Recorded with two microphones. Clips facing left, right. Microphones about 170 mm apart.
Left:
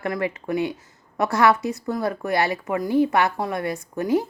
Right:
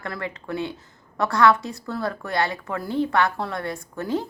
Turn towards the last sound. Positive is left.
turn(degrees=20)  # may be behind; listen again after turning